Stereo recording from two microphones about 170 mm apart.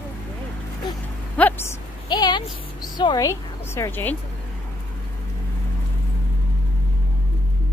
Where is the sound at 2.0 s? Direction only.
25° left (ahead or behind).